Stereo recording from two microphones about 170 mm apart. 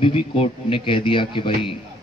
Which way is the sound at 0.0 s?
30° left (ahead or behind).